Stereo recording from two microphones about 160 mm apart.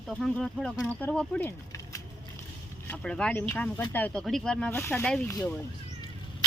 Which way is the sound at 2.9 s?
5° left (ahead or behind).